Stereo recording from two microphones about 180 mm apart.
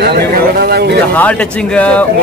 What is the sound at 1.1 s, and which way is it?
Speech, 5° left (ahead or behind).